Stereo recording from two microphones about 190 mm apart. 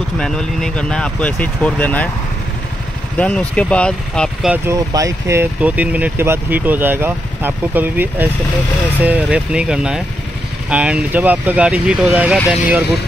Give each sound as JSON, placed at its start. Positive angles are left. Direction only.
{"t": 0.2, "sound": "speech", "side_deg": 5}
{"t": 3.2, "sound": "speech", "side_deg": 5}
{"t": 4.5, "sound": "speech", "side_deg": -15}